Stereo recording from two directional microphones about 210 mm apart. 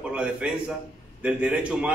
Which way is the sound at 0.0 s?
5° right (ahead or behind).